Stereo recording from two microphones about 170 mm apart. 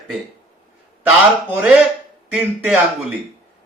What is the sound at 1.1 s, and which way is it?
Speech, 10° right (ahead or behind).